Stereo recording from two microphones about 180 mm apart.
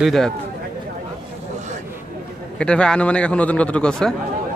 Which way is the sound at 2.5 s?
5° left (ahead or behind).